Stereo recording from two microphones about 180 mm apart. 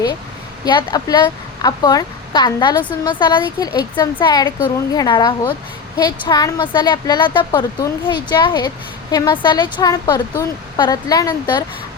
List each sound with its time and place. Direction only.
0.6 s a woman's voice: 25° left (ahead or behind)